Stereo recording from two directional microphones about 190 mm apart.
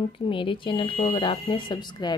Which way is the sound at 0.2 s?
25° left (ahead or behind).